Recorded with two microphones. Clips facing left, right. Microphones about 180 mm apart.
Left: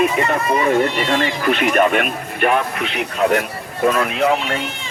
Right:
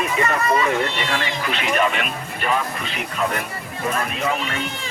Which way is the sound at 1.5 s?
55° left (ahead or behind).